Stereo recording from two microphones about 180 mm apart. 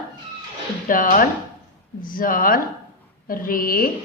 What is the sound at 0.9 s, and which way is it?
A woman's voice, 50° left (ahead or behind).